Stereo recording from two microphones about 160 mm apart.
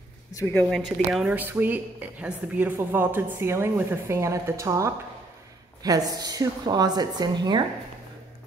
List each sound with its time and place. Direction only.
0.4 s speech: 15° left (ahead or behind)
0.7 s a woman's voice: centre (ahead or behind); by 7.6 s 25° right (ahead or behind)